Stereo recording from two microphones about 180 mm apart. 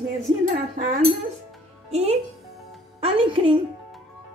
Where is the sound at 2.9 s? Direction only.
30° right (ahead or behind).